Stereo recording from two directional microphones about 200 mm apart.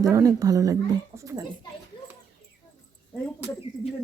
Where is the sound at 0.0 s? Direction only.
15° right (ahead or behind).